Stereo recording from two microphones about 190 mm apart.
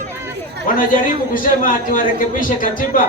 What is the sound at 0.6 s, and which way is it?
A man's voice, 45° left (ahead or behind).